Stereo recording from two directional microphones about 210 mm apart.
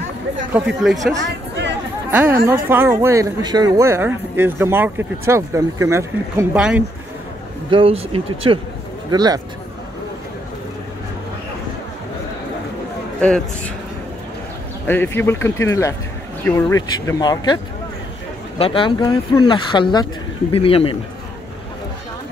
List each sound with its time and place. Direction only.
0.5 s speech: 5° right (ahead or behind)
1.1 s speech: 55° right (ahead or behind)
2.0 s speech: 10° right (ahead or behind)
7.7 s speech: 25° right (ahead or behind)
14.9 s speech: 10° left (ahead or behind)
18.6 s speech: 25° left (ahead or behind)